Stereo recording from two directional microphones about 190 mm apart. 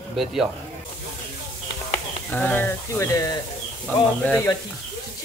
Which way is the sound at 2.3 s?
10° left (ahead or behind).